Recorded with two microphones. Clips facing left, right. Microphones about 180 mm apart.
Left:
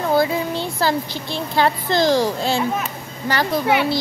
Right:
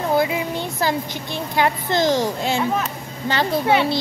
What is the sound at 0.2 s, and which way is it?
A child's voice, 20° right (ahead or behind).